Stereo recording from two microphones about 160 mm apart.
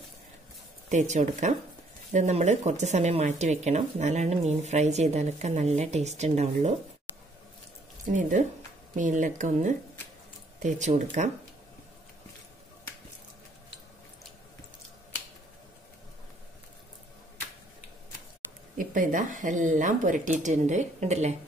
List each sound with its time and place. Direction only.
0.8 s speech: 45° right (ahead or behind)
8.0 s speech: 55° right (ahead or behind)
18.8 s speech: 55° right (ahead or behind)